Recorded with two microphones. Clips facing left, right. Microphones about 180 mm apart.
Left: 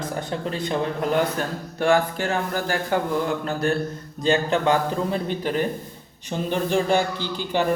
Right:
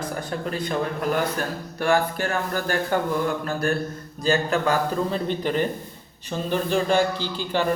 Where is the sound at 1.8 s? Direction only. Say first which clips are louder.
Left 2 dB; 20° left (ahead or behind).